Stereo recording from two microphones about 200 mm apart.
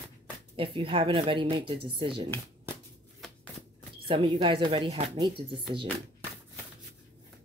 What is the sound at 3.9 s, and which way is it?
Speech, 25° right (ahead or behind).